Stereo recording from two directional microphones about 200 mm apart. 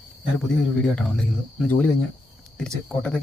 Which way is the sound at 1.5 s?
5° left (ahead or behind).